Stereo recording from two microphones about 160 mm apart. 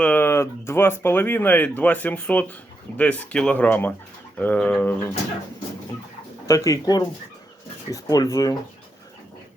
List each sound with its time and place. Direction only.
0.0 s speech: 10° left (ahead or behind)
6.5 s speech: 20° left (ahead or behind)